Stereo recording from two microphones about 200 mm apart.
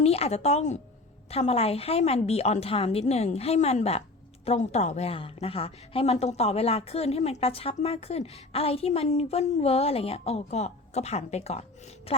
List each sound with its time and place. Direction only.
0.0 s a woman's voice: 30° left (ahead or behind)